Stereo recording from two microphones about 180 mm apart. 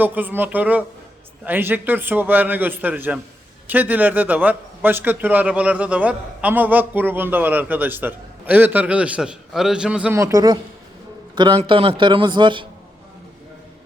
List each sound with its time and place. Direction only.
0.0 s a man's voice: 10° right (ahead or behind)
10.2 s a man's voice: 15° right (ahead or behind)